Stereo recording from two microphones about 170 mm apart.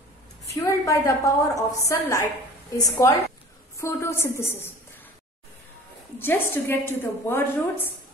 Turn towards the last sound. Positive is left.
turn(degrees=10)  # may be behind; listen again after turning